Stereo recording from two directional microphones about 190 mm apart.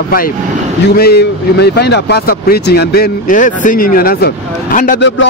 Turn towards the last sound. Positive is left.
turn(degrees=45)  # may be behind; listen again after turning